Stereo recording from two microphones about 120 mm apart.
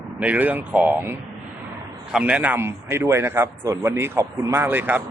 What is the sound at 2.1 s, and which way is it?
Speech, 10° right (ahead or behind).